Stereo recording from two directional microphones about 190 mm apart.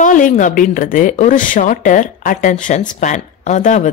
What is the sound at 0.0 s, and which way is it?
Speech, 45° left (ahead or behind).